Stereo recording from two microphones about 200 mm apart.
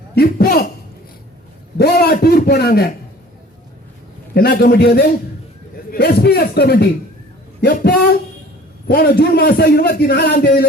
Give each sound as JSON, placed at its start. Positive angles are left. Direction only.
{"t": 0.1, "sound": "a sound", "side_deg": 50}
{"t": 1.8, "sound": "a man's voice", "side_deg": 50}
{"t": 4.4, "sound": "a man's voice", "side_deg": 45}